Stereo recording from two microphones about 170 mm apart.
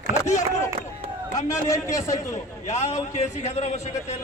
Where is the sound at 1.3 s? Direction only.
20° left (ahead or behind).